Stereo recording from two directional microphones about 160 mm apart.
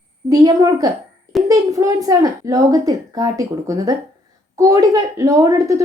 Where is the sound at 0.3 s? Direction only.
20° right (ahead or behind).